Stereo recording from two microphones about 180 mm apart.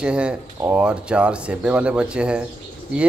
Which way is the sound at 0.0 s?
5° right (ahead or behind).